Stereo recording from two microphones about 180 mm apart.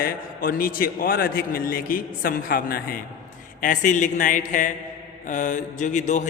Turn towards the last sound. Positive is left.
turn(degrees=40)  # may be behind; listen again after turning